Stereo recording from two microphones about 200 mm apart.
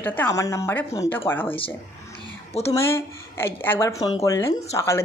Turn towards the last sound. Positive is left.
turn(degrees=20)  # may be behind; listen again after turning